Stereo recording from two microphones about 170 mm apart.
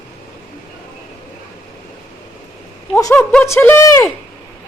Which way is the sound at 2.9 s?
10° left (ahead or behind).